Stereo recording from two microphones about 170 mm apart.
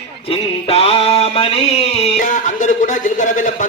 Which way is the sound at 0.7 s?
35° left (ahead or behind).